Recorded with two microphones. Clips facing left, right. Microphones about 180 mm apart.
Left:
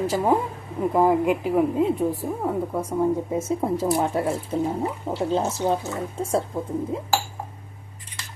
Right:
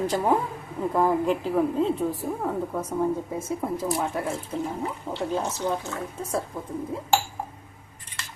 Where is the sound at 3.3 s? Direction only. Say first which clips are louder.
Left 5 dB; 25° left (ahead or behind).